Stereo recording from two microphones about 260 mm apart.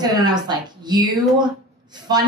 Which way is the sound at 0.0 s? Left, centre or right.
Centre.